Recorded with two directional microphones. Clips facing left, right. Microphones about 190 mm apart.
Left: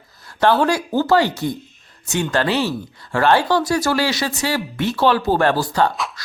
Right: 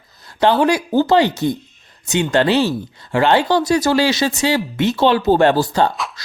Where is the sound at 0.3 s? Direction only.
15° right (ahead or behind).